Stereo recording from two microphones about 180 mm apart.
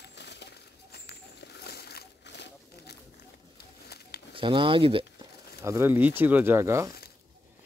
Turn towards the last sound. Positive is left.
turn(degrees=-15)  # may be behind; listen again after turning